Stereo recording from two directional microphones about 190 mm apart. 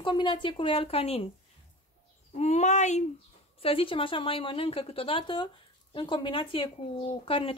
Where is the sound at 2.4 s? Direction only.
35° left (ahead or behind).